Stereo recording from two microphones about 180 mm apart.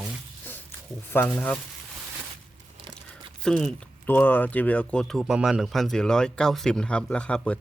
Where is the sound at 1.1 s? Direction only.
10° left (ahead or behind).